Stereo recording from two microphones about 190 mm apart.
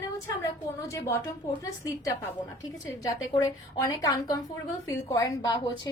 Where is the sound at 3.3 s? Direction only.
20° left (ahead or behind).